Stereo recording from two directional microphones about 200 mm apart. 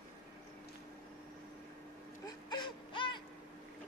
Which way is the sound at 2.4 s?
25° left (ahead or behind).